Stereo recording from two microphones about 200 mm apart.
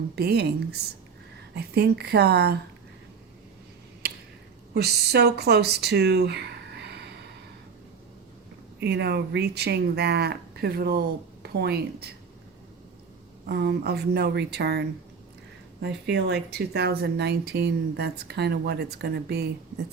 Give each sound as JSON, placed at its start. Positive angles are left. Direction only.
{"t": 0.2, "sound": "speech", "side_deg": -55}
{"t": 4.7, "sound": "speech", "side_deg": -55}
{"t": 8.8, "sound": "speech", "side_deg": -55}
{"t": 13.5, "sound": "speech", "side_deg": -55}